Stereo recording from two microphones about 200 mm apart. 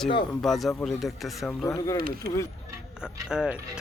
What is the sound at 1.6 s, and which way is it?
Speech, 15° left (ahead or behind).